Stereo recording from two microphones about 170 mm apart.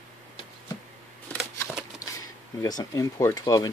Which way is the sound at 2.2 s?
20° left (ahead or behind).